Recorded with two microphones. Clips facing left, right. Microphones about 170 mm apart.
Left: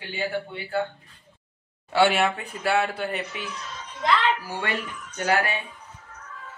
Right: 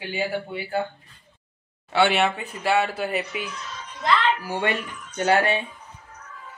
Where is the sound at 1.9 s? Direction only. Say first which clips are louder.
Even; centre (ahead or behind); by 5.6 s 25° right (ahead or behind).